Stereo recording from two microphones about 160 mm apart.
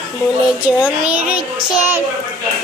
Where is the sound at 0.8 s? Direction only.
10° right (ahead or behind).